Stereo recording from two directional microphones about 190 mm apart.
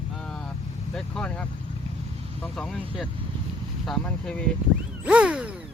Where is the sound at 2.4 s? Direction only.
5° left (ahead or behind).